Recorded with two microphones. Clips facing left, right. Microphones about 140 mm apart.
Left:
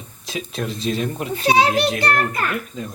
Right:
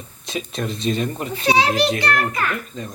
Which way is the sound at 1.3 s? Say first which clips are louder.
Left 2 dB; 45° left (ahead or behind).